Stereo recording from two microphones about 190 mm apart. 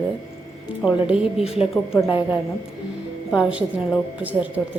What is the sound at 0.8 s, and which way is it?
Speech, 5° right (ahead or behind).